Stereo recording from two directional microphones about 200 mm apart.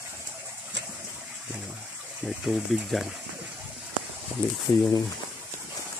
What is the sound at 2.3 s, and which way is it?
Speech, centre (ahead or behind).